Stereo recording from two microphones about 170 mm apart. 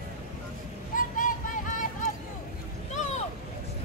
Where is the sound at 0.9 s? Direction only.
50° left (ahead or behind).